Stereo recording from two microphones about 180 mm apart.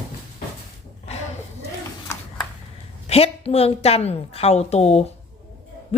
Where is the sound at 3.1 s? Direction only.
35° left (ahead or behind).